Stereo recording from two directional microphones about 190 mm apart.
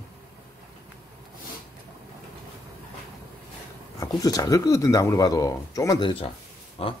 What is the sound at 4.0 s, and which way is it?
Speech, 20° left (ahead or behind).